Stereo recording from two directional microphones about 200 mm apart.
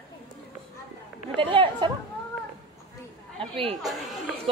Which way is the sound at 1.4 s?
25° right (ahead or behind).